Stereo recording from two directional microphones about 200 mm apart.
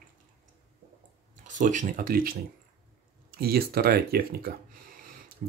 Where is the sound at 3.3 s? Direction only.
50° right (ahead or behind).